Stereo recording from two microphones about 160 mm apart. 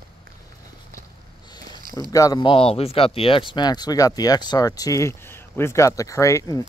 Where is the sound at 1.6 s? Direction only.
25° left (ahead or behind).